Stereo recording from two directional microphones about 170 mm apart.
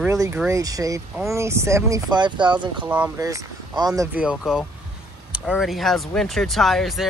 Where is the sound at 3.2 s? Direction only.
20° right (ahead or behind).